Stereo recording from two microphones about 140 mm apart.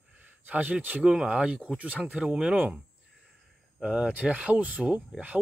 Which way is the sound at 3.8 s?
5° right (ahead or behind).